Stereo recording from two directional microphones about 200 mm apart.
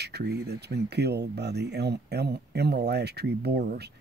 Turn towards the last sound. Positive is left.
turn(degrees=-50)  # may be behind; listen again after turning